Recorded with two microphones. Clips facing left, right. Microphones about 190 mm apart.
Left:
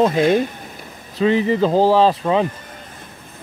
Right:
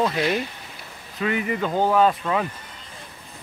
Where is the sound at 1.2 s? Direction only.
30° left (ahead or behind).